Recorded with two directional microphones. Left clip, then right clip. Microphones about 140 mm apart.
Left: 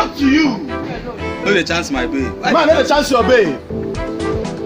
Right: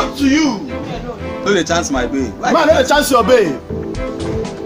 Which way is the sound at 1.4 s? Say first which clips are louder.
Right 1 dB; 45° right (ahead or behind).